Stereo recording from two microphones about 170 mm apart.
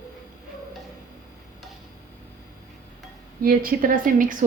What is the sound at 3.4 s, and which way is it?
A woman's voice, 55° right (ahead or behind).